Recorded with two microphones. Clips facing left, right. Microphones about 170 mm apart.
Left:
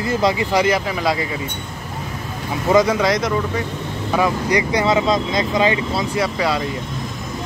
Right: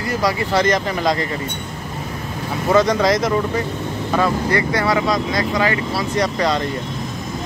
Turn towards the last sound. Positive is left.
turn(degrees=5)  # may be behind; listen again after turning